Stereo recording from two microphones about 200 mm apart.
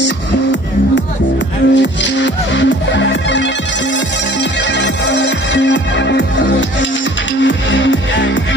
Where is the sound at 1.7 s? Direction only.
65° left (ahead or behind).